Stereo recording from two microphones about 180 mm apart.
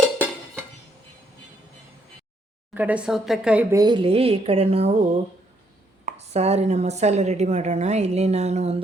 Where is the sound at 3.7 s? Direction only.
25° right (ahead or behind).